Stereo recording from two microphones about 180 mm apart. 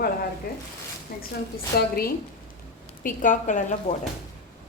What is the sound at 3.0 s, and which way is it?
Speech, 45° left (ahead or behind).